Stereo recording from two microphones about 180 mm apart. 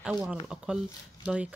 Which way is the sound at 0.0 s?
5° right (ahead or behind).